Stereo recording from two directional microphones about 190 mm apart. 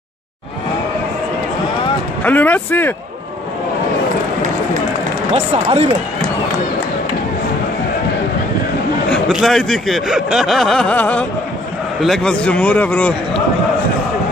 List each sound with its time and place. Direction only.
2.2 s speech: 10° left (ahead or behind)
5.3 s speech: 30° right (ahead or behind)
9.1 s speech: centre (ahead or behind)